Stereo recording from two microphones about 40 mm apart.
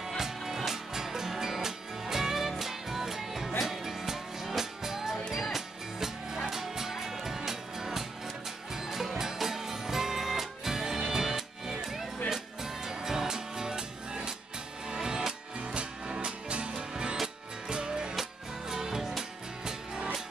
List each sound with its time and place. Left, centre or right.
0.6 s music: centre